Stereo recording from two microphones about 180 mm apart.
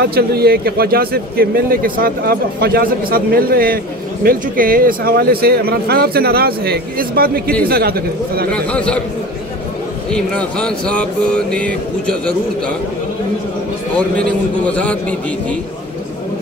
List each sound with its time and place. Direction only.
0.1 s a man's voice: 60° right (ahead or behind)
8.5 s a man's voice: 5° left (ahead or behind)
10.1 s speech: 5° left (ahead or behind)
14.7 s a man's voice: 10° left (ahead or behind)